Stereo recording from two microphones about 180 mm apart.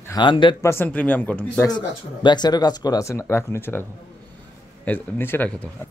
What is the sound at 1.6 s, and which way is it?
A man's voice, 25° left (ahead or behind).